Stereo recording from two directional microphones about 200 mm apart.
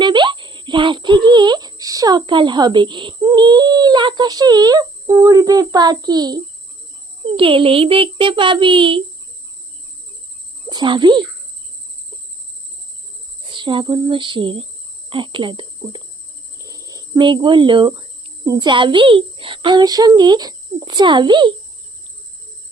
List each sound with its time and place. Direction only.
0.0 s a child's voice: 25° right (ahead or behind)
10.7 s a child's voice: 20° right (ahead or behind)
13.5 s a child's voice: 25° right (ahead or behind)